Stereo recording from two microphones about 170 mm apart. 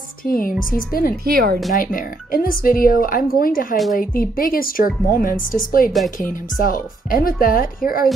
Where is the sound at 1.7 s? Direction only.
55° left (ahead or behind).